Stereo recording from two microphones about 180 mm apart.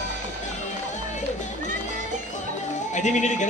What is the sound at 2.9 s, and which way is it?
Speech, 40° left (ahead or behind).